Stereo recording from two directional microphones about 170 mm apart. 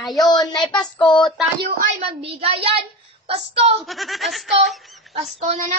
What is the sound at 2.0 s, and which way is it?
Speech, 35° right (ahead or behind).